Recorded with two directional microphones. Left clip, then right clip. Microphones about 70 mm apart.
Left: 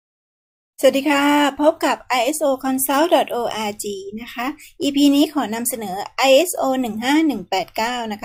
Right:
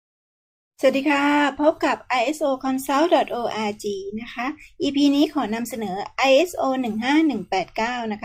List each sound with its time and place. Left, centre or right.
0.8 s speech: left